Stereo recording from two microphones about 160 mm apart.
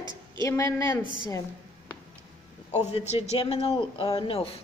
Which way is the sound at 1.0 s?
30° left (ahead or behind).